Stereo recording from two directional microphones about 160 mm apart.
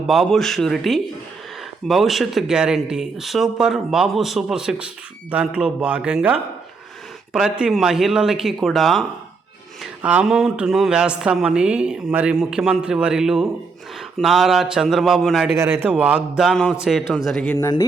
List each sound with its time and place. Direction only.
0.1 s speech: centre (ahead or behind)
15.4 s speech: 15° right (ahead or behind); by 17.6 s 5° left (ahead or behind)
17.6 s speech: 20° left (ahead or behind)